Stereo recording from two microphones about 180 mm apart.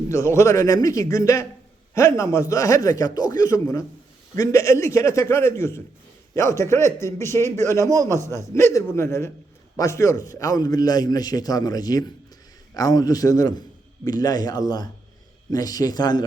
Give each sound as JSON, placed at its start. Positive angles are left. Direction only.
{"t": 0.1, "sound": "a man's voice", "side_deg": 15}